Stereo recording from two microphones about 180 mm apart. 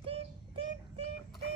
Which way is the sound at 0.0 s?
30° right (ahead or behind).